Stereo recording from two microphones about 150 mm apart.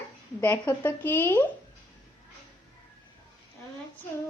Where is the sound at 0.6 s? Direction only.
15° left (ahead or behind).